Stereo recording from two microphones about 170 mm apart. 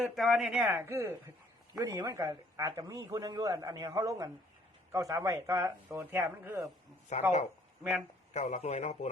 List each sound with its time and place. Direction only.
0.0 s a man's voice: centre (ahead or behind); by 6.7 s 15° right (ahead or behind)
7.1 s a man's voice: 40° left (ahead or behind)
8.3 s a man's voice: 45° left (ahead or behind)